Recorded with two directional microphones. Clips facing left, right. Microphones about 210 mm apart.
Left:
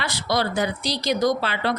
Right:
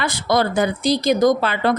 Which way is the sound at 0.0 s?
50° right (ahead or behind).